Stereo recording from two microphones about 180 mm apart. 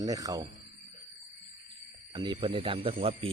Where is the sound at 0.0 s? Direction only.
20° right (ahead or behind).